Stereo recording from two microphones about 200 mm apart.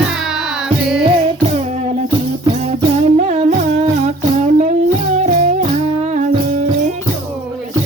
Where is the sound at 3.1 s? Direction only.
35° right (ahead or behind).